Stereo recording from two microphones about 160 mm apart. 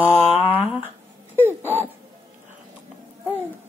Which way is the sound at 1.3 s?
15° right (ahead or behind).